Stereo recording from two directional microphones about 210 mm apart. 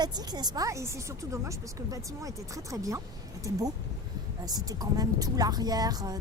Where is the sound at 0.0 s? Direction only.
20° right (ahead or behind).